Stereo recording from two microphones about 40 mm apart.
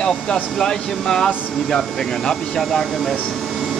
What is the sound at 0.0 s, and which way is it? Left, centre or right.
Speech, centre.